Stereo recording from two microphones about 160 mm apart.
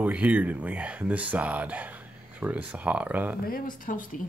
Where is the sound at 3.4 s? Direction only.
60° left (ahead or behind).